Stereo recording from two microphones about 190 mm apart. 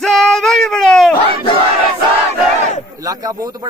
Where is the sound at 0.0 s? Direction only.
Centre (ahead or behind).